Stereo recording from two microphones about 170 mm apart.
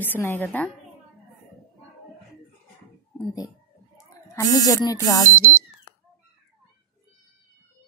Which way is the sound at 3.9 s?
20° left (ahead or behind).